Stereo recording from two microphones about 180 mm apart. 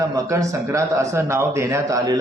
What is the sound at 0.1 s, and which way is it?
A man's voice, 15° right (ahead or behind).